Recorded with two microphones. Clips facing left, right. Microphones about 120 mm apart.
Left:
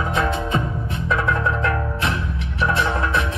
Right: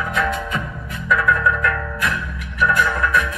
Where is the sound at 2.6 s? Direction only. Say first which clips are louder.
Right 2 dB; 30° left (ahead or behind).